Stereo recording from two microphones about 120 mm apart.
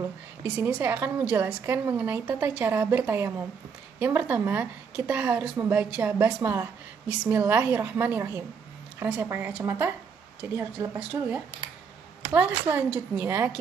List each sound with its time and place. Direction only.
0.5 s a woman's voice: 10° right (ahead or behind)
11.0 s a woman's voice: 10° right (ahead or behind)